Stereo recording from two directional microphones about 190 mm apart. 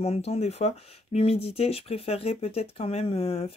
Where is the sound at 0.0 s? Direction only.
30° left (ahead or behind).